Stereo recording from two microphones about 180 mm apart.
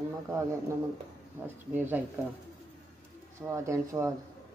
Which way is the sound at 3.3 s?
15° right (ahead or behind).